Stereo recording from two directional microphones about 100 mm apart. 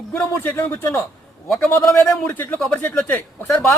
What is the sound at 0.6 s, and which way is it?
Speech, 25° left (ahead or behind).